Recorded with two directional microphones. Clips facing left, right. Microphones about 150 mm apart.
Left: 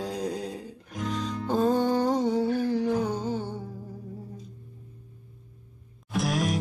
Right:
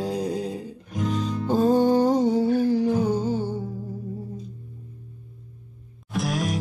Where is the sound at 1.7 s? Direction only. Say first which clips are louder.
Right 8 dB; 30° right (ahead or behind).